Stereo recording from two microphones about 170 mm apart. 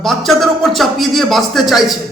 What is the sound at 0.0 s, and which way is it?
A man's voice, centre (ahead or behind).